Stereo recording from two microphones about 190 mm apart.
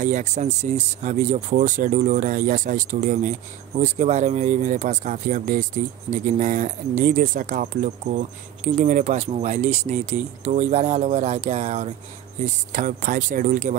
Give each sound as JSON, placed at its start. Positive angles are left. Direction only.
{"t": 0.0, "sound": "speech", "side_deg": -40}